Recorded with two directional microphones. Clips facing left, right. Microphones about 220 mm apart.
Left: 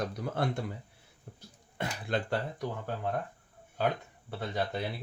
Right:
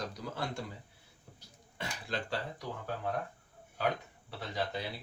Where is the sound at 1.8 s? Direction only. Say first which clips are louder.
Left 6 dB; 55° left (ahead or behind).